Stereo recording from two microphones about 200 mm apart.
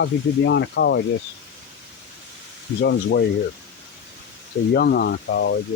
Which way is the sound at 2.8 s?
55° left (ahead or behind).